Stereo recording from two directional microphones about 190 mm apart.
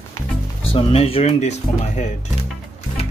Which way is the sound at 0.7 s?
30° left (ahead or behind).